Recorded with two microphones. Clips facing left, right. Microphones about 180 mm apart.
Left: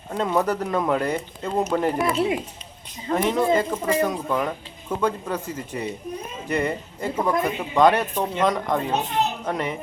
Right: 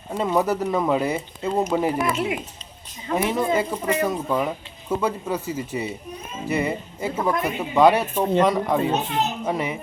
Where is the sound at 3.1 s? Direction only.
5° right (ahead or behind).